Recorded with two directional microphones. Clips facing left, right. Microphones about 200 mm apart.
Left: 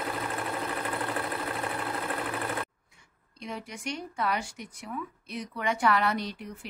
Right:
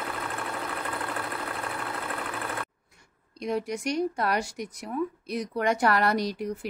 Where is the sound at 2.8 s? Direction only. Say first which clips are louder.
Right 3 dB; 40° right (ahead or behind).